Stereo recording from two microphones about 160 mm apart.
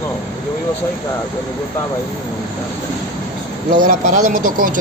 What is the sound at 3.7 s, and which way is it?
Speech, 55° right (ahead or behind).